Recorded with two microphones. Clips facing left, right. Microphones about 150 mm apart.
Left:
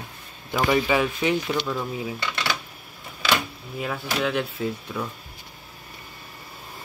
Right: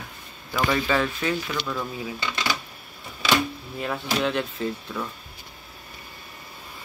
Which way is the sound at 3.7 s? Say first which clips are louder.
Even; 5° left (ahead or behind).